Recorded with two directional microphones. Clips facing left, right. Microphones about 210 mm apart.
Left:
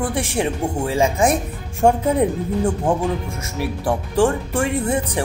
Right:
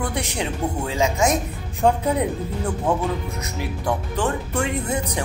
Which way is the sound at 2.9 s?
30° left (ahead or behind).